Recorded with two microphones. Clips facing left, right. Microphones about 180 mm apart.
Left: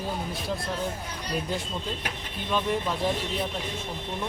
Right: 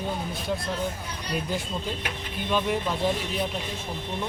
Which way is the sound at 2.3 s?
Centre (ahead or behind).